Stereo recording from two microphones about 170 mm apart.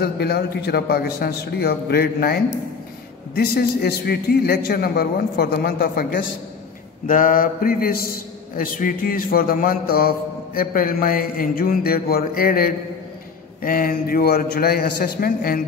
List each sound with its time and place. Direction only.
0.0 s a man's voice: 70° left (ahead or behind)
7.1 s a man's voice: 55° left (ahead or behind)